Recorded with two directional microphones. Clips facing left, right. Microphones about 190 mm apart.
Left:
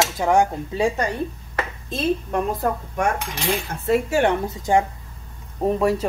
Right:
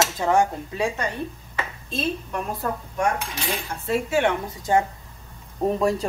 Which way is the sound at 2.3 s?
45° left (ahead or behind).